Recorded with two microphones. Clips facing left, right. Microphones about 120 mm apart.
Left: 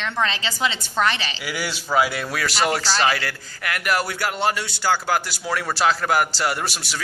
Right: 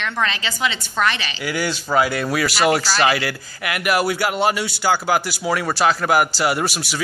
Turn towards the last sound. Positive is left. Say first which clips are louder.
# right 5 dB
turn(degrees=-5)  # may be behind; listen again after turning